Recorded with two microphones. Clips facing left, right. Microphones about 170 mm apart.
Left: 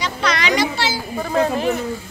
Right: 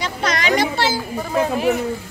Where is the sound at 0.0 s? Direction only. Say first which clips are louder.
Even; 45° right (ahead or behind).